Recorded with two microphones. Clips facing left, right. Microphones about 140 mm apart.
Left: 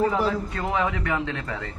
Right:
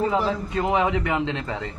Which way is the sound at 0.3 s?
20° right (ahead or behind).